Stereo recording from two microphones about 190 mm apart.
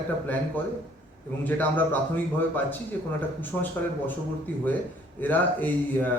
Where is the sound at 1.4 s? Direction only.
10° left (ahead or behind).